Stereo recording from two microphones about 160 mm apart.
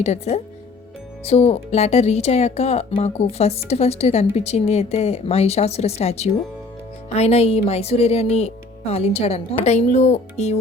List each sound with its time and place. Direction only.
0.0 s a woman's voice: 45° left (ahead or behind)